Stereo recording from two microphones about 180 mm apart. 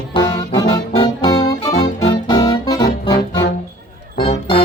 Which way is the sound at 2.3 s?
25° left (ahead or behind).